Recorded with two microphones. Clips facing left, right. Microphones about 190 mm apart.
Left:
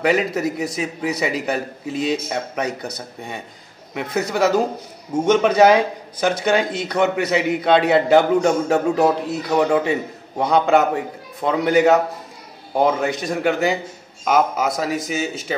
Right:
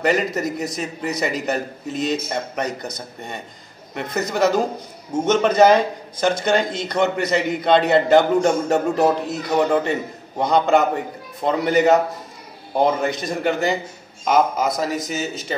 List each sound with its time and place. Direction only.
0.0 s a man's voice: 5° left (ahead or behind)
3.9 s a man's voice: 5° left (ahead or behind)